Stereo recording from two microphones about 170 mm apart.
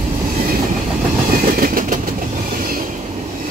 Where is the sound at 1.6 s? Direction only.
55° right (ahead or behind).